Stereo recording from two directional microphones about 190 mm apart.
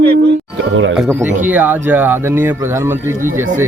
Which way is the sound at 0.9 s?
5° right (ahead or behind).